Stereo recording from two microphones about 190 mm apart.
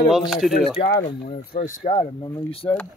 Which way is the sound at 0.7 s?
45° left (ahead or behind).